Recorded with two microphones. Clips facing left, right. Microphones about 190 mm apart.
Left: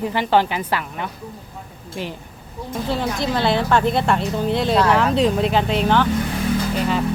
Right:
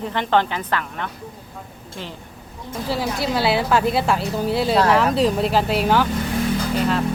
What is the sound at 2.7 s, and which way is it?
Speech, 5° right (ahead or behind).